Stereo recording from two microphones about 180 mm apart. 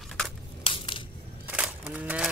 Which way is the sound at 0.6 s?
30° left (ahead or behind).